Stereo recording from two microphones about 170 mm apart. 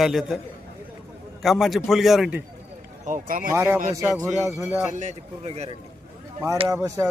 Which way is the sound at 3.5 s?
15° right (ahead or behind).